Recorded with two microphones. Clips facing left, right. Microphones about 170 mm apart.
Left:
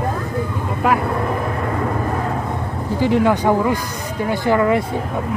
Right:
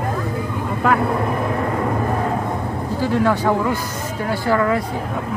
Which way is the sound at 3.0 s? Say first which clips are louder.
Left 3 dB; 15° left (ahead or behind).